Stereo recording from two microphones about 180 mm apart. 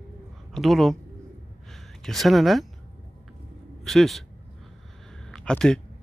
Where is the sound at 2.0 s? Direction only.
Centre (ahead or behind).